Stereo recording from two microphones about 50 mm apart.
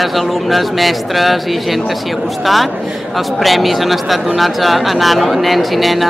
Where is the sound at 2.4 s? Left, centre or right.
Centre.